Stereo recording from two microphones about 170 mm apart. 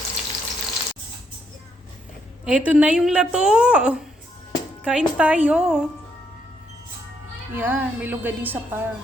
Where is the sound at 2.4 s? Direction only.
5° right (ahead or behind).